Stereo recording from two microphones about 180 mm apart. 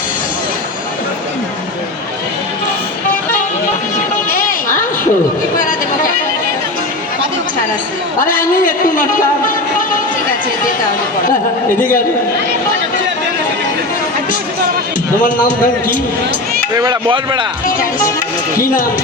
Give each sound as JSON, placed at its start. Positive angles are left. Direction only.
{"t": 4.3, "sound": "a sound", "side_deg": 50}
{"t": 8.2, "sound": "a man's voice", "side_deg": 50}
{"t": 15.2, "sound": "a man's voice", "side_deg": 50}
{"t": 16.7, "sound": "speech", "side_deg": -20}
{"t": 18.6, "sound": "a man's voice", "side_deg": 50}